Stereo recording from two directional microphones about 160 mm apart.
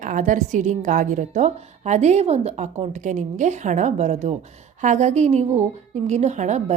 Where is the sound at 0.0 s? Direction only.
55° right (ahead or behind).